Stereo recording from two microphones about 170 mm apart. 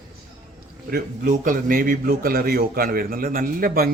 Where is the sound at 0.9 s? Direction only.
55° right (ahead or behind).